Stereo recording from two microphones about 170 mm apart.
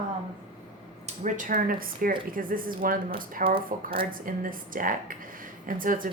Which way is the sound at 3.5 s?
30° right (ahead or behind).